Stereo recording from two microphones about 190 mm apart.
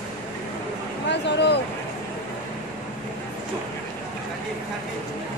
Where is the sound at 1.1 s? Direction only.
65° left (ahead or behind).